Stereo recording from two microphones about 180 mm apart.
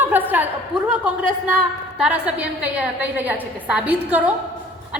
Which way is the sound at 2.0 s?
5° right (ahead or behind).